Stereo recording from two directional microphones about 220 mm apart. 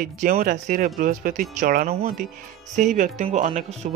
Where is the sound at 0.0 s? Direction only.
40° right (ahead or behind).